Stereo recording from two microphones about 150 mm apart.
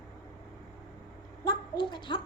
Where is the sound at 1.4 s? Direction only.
30° left (ahead or behind).